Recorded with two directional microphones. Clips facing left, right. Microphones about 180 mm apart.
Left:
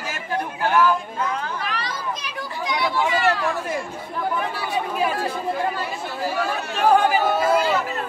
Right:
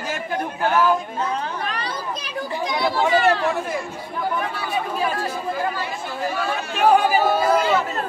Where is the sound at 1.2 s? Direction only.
30° right (ahead or behind).